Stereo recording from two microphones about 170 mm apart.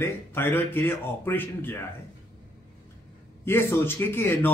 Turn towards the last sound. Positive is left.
turn(degrees=15)  # may be behind; listen again after turning